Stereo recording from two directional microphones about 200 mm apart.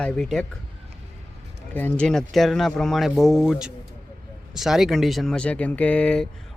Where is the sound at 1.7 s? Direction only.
5° left (ahead or behind).